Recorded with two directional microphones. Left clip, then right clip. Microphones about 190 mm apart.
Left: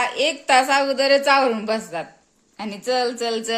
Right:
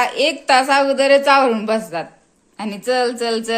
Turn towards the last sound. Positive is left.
turn(degrees=10)  # may be behind; listen again after turning